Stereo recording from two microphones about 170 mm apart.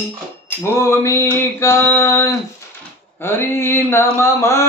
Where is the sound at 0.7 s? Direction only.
15° left (ahead or behind).